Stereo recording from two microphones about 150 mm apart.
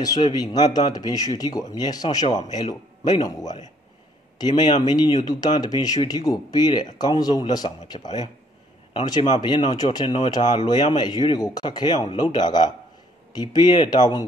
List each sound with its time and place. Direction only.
0.0 s speech: 25° left (ahead or behind)